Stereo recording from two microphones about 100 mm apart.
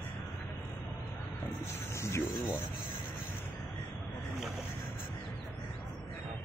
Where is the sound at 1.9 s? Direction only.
30° left (ahead or behind).